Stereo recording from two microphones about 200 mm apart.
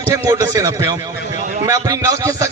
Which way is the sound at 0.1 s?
15° right (ahead or behind).